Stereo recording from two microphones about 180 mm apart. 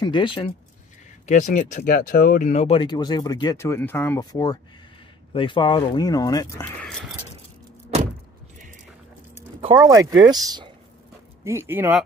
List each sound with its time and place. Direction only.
0.0 s speech: 25° left (ahead or behind)
1.2 s speech: 45° left (ahead or behind); by 6.4 s 20° left (ahead or behind)
6.6 s a sound: 5° left (ahead or behind)
9.6 s speech: 25° right (ahead or behind)